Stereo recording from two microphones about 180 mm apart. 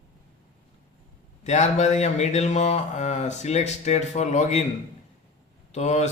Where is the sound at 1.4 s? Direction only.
40° left (ahead or behind).